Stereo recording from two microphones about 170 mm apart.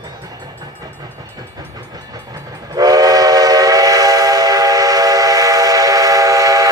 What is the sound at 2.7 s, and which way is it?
Train, 20° right (ahead or behind).